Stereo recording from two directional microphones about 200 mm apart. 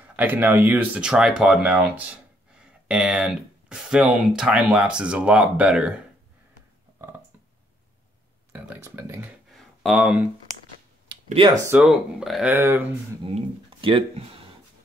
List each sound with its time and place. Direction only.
0.1 s speech: 10° right (ahead or behind)
8.5 s speech: 10° right (ahead or behind)
9.6 s a sound: centre (ahead or behind)
11.2 s speech: 30° right (ahead or behind)
11.6 s speech: 5° right (ahead or behind)
13.3 s speech: 25° right (ahead or behind)